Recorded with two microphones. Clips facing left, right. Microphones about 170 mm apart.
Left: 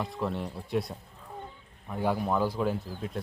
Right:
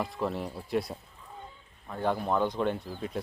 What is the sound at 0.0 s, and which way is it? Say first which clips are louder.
Speech: right 1 dB; centre (ahead or behind).